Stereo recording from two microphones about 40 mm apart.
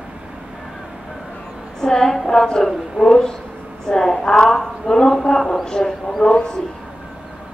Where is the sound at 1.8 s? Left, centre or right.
Centre.